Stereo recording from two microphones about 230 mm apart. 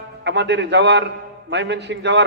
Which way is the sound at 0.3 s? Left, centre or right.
Right.